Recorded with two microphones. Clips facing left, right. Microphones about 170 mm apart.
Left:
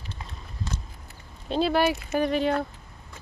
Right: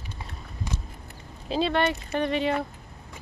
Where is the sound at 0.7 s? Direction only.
15° right (ahead or behind).